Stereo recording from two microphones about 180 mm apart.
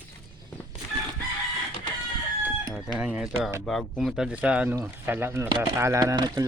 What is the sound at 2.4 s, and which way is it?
Chicken, 5° right (ahead or behind).